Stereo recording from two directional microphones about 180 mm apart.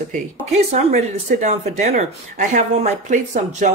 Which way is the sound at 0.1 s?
40° right (ahead or behind).